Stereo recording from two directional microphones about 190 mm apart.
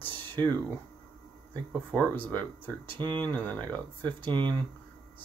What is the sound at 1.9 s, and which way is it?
Speech, 10° left (ahead or behind).